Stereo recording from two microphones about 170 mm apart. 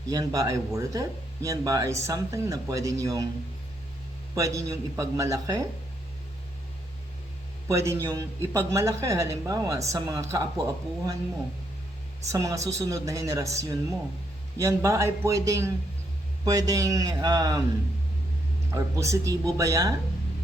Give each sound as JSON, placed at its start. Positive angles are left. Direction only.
{"t": 0.1, "sound": "speech", "side_deg": -20}
{"t": 4.4, "sound": "speech", "side_deg": -20}
{"t": 7.7, "sound": "speech", "side_deg": -15}
{"t": 12.3, "sound": "speech", "side_deg": -20}
{"t": 18.7, "sound": "speech", "side_deg": -15}